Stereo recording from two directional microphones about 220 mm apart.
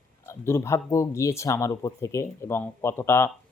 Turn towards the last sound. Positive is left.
turn(degrees=10)  # may be behind; listen again after turning